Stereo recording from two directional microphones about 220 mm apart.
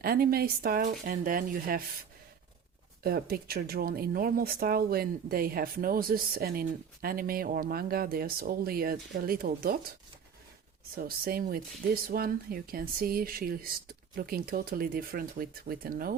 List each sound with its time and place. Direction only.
0.0 s speech: 45° right (ahead or behind)
3.0 s speech: 45° right (ahead or behind)
10.9 s speech: 40° right (ahead or behind)